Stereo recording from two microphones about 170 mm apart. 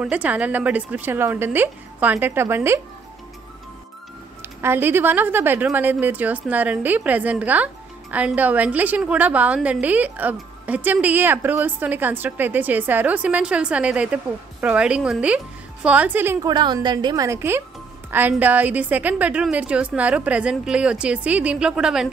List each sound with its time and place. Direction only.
0.0 s a woman's voice: 10° right (ahead or behind)
4.4 s a woman's voice: 15° right (ahead or behind)
16.4 s a woman's voice: 25° right (ahead or behind); by 22.1 s 5° right (ahead or behind)